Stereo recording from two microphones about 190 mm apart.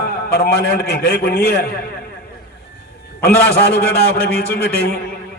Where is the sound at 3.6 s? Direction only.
55° left (ahead or behind).